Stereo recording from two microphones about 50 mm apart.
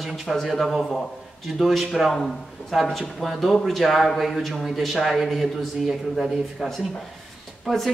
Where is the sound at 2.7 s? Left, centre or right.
Centre.